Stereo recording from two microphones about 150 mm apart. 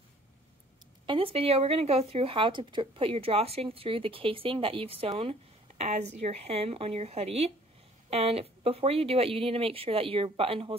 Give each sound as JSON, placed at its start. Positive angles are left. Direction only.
{"t": 1.0, "sound": "speech", "side_deg": -40}